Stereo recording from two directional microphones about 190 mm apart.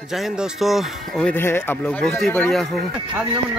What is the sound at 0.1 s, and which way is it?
Speech, centre (ahead or behind).